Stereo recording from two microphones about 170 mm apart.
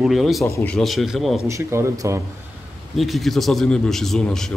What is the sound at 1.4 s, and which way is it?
Speech, 15° right (ahead or behind).